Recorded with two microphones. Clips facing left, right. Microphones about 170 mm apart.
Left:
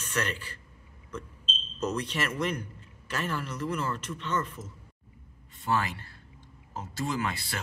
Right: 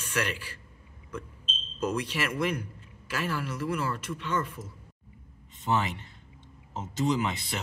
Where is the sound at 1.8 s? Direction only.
10° right (ahead or behind).